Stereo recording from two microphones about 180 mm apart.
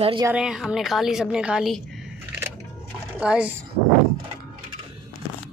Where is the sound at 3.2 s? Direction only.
5° right (ahead or behind).